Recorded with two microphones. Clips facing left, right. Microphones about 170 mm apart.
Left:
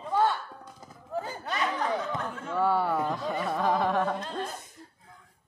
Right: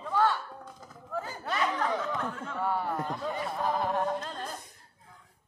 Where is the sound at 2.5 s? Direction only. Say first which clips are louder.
Left 6 dB; 85° left.